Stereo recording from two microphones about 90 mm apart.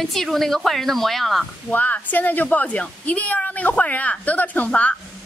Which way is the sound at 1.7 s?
20° left (ahead or behind).